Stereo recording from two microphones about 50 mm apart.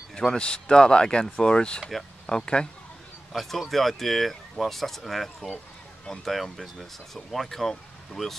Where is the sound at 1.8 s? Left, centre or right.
Centre.